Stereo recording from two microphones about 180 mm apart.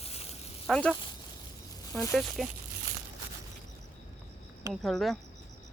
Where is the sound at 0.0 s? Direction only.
35° left (ahead or behind).